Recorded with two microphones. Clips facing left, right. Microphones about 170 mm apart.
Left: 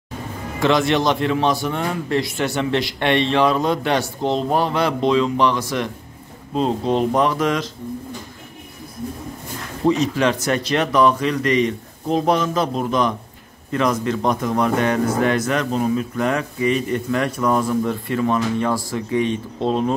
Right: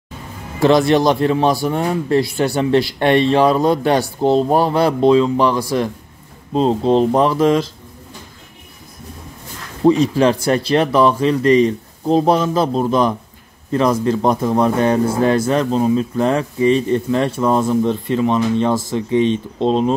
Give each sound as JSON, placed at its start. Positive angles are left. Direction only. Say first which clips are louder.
{"t": 0.6, "sound": "a man's voice", "louder": "right 5 dB", "side_deg": -35}
{"t": 9.8, "sound": "a man's voice", "louder": "right 5 dB", "side_deg": -35}